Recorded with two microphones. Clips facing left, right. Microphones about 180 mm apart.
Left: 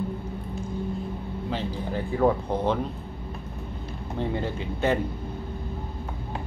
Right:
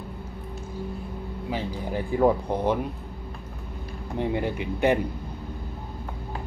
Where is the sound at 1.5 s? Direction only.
15° right (ahead or behind).